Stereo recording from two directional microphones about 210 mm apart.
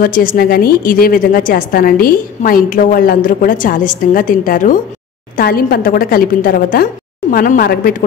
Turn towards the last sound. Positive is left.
turn(degrees=45)  # may be behind; listen again after turning